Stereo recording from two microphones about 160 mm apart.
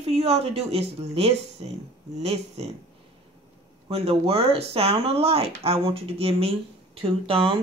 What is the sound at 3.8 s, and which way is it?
Speech, 40° right (ahead or behind).